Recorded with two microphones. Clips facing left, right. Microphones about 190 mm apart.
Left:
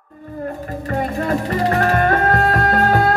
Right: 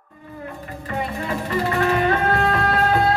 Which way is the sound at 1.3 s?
50° left (ahead or behind).